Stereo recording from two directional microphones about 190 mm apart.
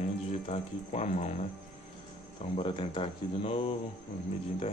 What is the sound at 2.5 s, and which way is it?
Speech, 30° left (ahead or behind).